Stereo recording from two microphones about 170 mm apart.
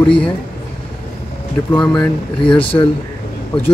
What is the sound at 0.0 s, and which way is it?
Speech, 5° left (ahead or behind).